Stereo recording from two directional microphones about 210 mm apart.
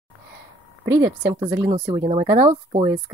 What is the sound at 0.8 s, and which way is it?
Speech, 20° right (ahead or behind).